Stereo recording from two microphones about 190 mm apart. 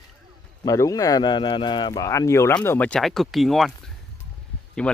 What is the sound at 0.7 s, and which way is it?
Speech, 15° left (ahead or behind).